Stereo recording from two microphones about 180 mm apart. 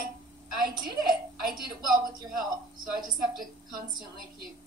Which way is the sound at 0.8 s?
55° right (ahead or behind).